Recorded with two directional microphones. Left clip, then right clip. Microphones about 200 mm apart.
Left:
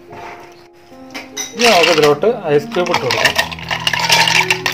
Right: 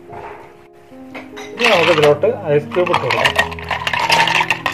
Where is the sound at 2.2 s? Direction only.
45° left (ahead or behind).